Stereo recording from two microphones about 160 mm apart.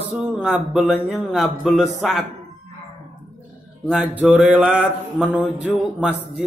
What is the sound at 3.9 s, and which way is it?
Mantra, 10° right (ahead or behind).